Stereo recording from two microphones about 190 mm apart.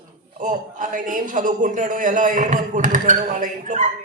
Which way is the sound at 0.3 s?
45° right (ahead or behind).